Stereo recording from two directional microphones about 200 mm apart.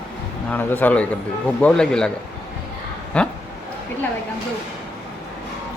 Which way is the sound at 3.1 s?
5° left (ahead or behind).